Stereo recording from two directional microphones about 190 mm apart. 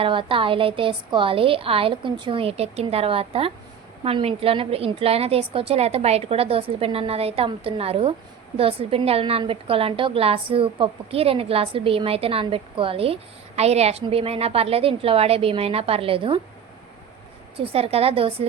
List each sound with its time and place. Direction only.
0.0 s a woman's voice: 25° right (ahead or behind)
17.7 s a woman's voice: 30° right (ahead or behind)